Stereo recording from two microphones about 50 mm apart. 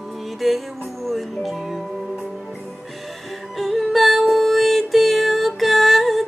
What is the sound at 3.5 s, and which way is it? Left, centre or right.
Music, centre.